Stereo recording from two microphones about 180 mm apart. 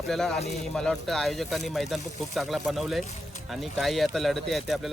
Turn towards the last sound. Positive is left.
turn(degrees=0)  # may be behind; listen again after turning